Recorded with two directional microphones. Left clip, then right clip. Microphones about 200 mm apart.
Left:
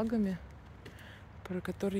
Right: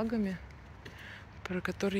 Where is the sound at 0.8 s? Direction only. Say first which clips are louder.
Right 5 dB; 10° left (ahead or behind).